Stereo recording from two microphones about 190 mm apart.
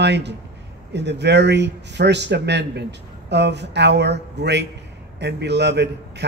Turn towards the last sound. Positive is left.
turn(degrees=-65)  # may be behind; listen again after turning